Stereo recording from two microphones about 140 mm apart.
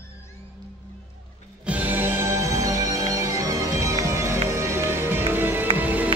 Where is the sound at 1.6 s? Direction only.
10° right (ahead or behind).